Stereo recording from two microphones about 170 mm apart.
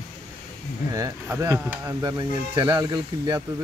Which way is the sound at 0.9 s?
20° right (ahead or behind).